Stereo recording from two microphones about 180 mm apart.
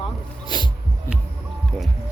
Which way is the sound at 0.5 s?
25° left (ahead or behind).